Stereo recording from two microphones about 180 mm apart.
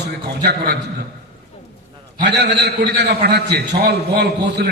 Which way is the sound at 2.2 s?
70° right (ahead or behind).